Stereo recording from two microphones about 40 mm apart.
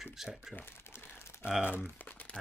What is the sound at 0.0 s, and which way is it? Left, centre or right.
Speech, centre.